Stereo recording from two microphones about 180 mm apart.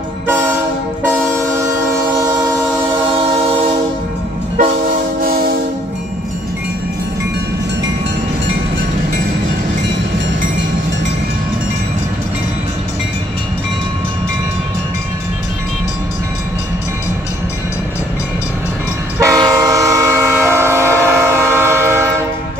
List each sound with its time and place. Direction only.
19.1 s train: 20° right (ahead or behind)